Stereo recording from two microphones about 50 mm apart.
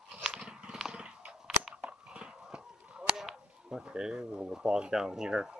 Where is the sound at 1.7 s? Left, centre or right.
Right.